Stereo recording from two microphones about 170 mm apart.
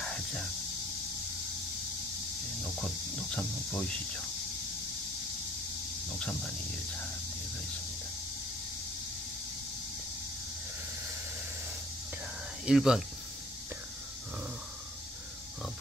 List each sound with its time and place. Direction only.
0.0 s music: 5° left (ahead or behind)
2.6 s speech: centre (ahead or behind)
6.1 s speech: 5° left (ahead or behind)
12.6 s speech: 5° right (ahead or behind)